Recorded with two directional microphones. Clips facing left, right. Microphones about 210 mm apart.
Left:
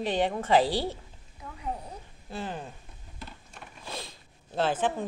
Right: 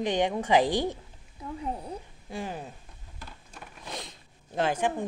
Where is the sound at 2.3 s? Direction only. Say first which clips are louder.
Right 1 dB; 10° right (ahead or behind).